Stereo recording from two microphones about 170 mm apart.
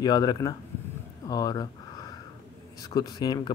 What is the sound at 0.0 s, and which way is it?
Speech, 25° left (ahead or behind).